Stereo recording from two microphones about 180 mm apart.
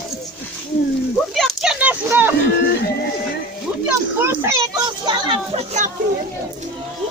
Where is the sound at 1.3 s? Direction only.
Centre (ahead or behind).